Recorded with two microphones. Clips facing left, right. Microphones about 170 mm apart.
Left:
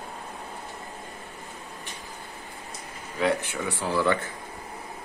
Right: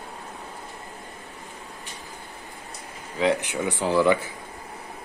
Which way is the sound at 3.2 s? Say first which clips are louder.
Right 3 dB; 15° right (ahead or behind).